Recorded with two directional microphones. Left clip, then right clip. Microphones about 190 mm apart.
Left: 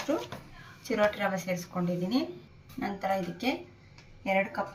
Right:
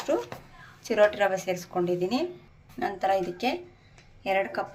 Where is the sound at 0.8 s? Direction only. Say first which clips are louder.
Right 6 dB; 45° right (ahead or behind).